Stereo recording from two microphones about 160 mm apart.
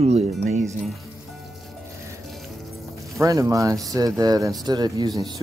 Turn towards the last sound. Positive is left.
turn(degrees=-25)  # may be behind; listen again after turning